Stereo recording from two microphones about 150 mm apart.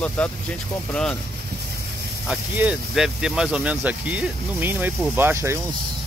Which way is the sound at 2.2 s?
10° right (ahead or behind).